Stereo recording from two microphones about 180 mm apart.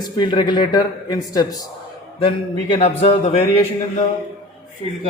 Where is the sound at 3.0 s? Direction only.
35° left (ahead or behind).